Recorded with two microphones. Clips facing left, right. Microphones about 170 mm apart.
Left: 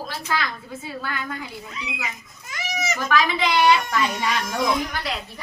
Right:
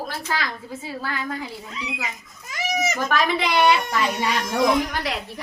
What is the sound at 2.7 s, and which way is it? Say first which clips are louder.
Speech: even; 55° right (ahead or behind).